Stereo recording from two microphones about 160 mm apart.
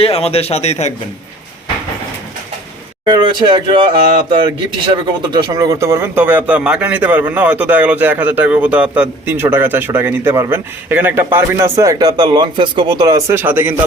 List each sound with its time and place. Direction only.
0.0 s speech: 40° left (ahead or behind)
3.1 s speech: 30° right (ahead or behind); by 13.7 s 10° right (ahead or behind)